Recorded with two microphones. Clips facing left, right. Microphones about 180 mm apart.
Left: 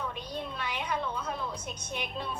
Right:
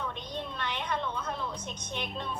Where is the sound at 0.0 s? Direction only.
10° left (ahead or behind).